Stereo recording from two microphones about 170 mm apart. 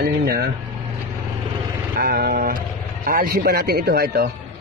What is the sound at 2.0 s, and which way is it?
A man's voice, 65° right (ahead or behind).